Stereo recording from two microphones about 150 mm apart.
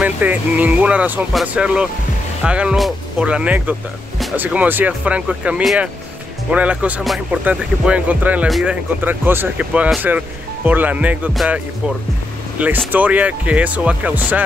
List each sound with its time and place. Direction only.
0.0 s speech: 10° right (ahead or behind)
9.0 s speech: 15° right (ahead or behind)